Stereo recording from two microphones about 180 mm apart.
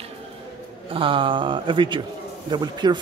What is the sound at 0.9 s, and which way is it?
Speech, 30° right (ahead or behind).